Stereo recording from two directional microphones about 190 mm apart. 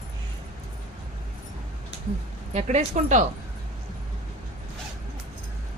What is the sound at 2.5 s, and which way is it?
Speech, 35° right (ahead or behind).